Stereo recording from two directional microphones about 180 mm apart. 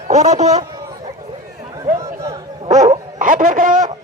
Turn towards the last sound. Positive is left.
turn(degrees=-50)  # may be behind; listen again after turning